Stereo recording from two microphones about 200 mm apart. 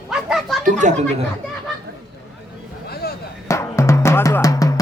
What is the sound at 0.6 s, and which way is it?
Speech, 35° right (ahead or behind).